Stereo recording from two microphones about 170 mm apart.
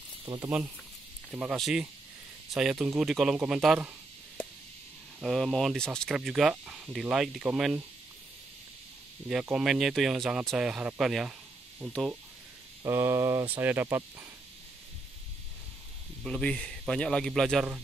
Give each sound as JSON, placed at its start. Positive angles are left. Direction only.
{"t": 0.2, "sound": "speech", "side_deg": -25}
{"t": 1.3, "sound": "speech", "side_deg": -5}
{"t": 4.4, "sound": "chop", "side_deg": 10}
{"t": 5.2, "sound": "speech", "side_deg": 0}
{"t": 9.3, "sound": "speech", "side_deg": -5}
{"t": 12.8, "sound": "speech", "side_deg": -15}
{"t": 16.3, "sound": "speech", "side_deg": 5}